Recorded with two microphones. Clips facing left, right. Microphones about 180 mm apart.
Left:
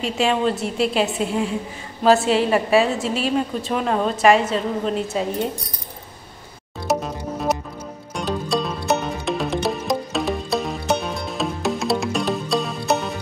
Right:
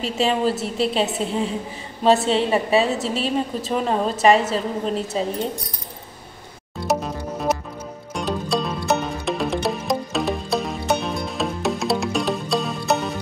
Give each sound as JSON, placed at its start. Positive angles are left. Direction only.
{"t": 0.0, "sound": "a woman's voice", "side_deg": 0}
{"t": 2.3, "sound": "a woman's voice", "side_deg": -25}
{"t": 2.8, "sound": "a woman's voice", "side_deg": 0}
{"t": 6.9, "sound": "music", "side_deg": 0}